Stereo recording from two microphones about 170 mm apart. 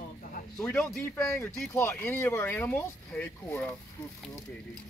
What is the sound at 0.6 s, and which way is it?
Speech, 5° left (ahead or behind).